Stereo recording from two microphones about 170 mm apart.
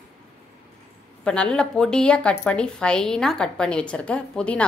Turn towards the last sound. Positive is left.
turn(degrees=5)  # may be behind; listen again after turning